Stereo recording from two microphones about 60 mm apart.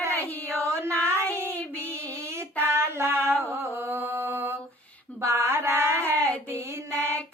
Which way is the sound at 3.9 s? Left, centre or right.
Right.